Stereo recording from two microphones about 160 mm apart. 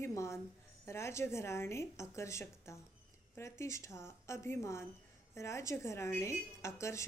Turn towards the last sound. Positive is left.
turn(degrees=20)  # may be behind; listen again after turning